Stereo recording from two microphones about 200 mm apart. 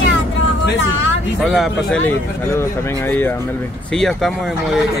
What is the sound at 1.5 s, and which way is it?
Speech, centre (ahead or behind).